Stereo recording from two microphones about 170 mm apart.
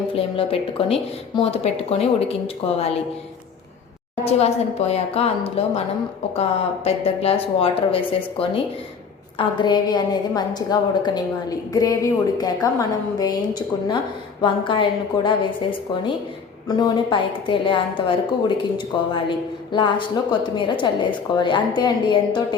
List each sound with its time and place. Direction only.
0.1 s speech: 35° left (ahead or behind)
4.2 s a woman's voice: 35° left (ahead or behind)